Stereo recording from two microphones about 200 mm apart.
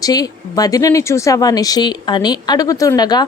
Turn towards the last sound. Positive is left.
turn(degrees=20)  # may be behind; listen again after turning